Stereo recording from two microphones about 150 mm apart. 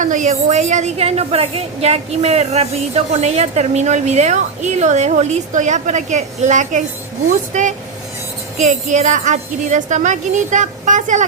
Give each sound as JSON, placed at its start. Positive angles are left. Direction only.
{"t": 0.0, "sound": "a woman's voice", "side_deg": -55}